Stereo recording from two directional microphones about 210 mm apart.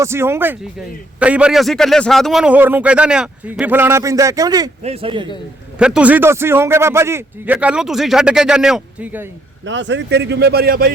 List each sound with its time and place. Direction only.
0.0 s a man's voice: 10° right (ahead or behind)
4.8 s a man's voice: 30° right (ahead or behind)
5.8 s a man's voice: 5° right (ahead or behind)
9.6 s speech: 60° right (ahead or behind)